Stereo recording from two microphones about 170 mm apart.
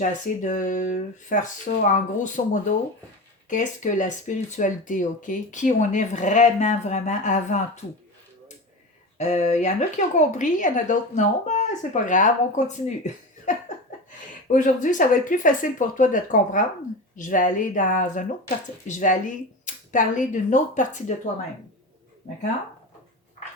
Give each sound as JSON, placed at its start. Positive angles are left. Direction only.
{"t": 0.0, "sound": "speech", "side_deg": 50}
{"t": 9.1, "sound": "speech", "side_deg": 40}
{"t": 14.4, "sound": "speech", "side_deg": 50}